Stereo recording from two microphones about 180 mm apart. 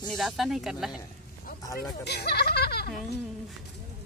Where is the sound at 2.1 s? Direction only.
65° left (ahead or behind).